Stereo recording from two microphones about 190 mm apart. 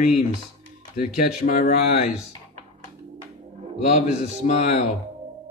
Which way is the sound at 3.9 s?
35° left (ahead or behind).